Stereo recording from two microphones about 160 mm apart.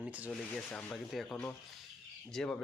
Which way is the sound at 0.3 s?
5° left (ahead or behind).